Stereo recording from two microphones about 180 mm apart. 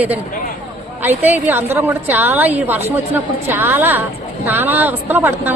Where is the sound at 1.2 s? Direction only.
10° right (ahead or behind).